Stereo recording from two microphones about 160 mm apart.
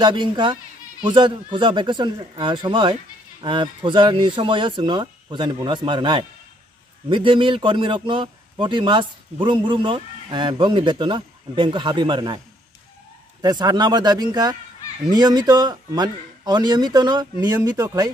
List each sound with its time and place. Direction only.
0.0 s a man's voice: 30° right (ahead or behind)
13.4 s a man's voice: 25° right (ahead or behind)